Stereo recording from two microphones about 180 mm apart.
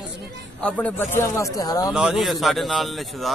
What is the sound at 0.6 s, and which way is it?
Speech, 10° left (ahead or behind).